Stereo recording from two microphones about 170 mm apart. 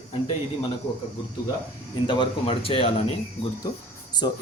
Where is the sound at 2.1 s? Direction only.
30° left (ahead or behind).